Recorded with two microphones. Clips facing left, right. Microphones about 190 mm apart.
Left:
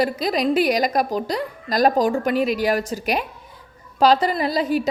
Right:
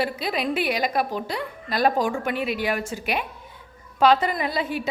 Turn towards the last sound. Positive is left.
turn(degrees=40)  # may be behind; listen again after turning